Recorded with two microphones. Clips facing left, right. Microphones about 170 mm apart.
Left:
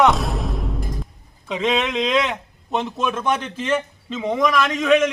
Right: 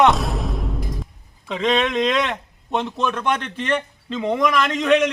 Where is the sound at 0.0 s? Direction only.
Centre (ahead or behind).